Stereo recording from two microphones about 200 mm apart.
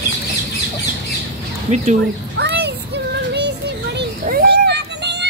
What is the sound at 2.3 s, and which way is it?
Child singing, 55° right (ahead or behind).